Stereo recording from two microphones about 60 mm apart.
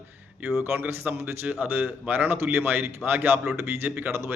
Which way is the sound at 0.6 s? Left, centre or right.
Right.